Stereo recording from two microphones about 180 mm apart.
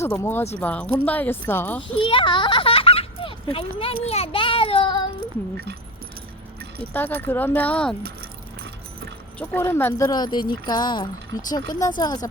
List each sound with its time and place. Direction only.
0.0 s speech: 15° left (ahead or behind)
2.0 s a sound: 30° left (ahead or behind)
7.2 s speech: 10° left (ahead or behind)
9.4 s speech: 10° left (ahead or behind)